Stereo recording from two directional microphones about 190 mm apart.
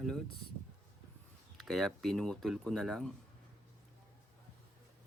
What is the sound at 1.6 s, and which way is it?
Speech, centre (ahead or behind).